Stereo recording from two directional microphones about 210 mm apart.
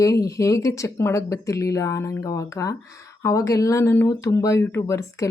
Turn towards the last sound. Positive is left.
turn(degrees=15)  # may be behind; listen again after turning